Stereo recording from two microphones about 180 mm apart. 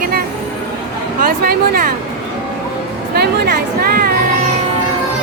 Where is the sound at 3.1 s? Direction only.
60° right (ahead or behind).